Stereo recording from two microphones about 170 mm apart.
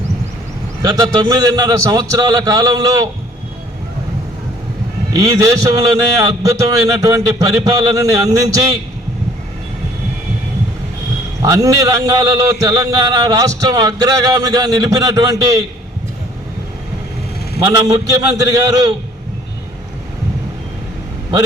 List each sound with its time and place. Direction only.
0.8 s a man's voice: 25° right (ahead or behind)
5.1 s a man's voice: 20° right (ahead or behind)
11.4 s a man's voice: 20° right (ahead or behind)
17.6 s a man's voice: 20° right (ahead or behind)